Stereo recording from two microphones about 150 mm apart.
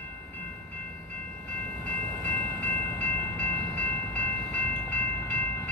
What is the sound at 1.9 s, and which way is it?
Train, 10° left (ahead or behind).